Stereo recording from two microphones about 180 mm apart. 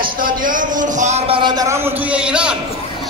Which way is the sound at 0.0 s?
50° right (ahead or behind).